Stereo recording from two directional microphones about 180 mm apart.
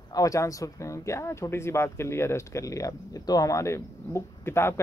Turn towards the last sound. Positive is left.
turn(degrees=15)  # may be behind; listen again after turning